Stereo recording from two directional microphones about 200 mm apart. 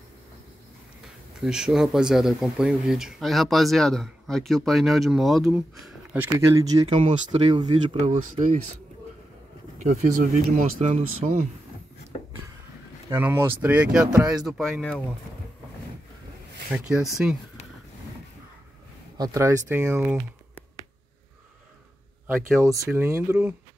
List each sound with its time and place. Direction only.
1.0 s speech: centre (ahead or behind); by 8.0 s 25° right (ahead or behind)
8.3 s speech: 40° right (ahead or behind)
9.8 s speech: 35° right (ahead or behind)
13.1 s speech: 10° right (ahead or behind)
16.7 s speech: 5° right (ahead or behind)
19.1 s speech: 15° right (ahead or behind)
22.3 s speech: 15° right (ahead or behind)